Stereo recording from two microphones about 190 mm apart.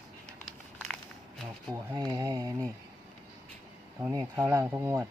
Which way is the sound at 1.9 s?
20° right (ahead or behind).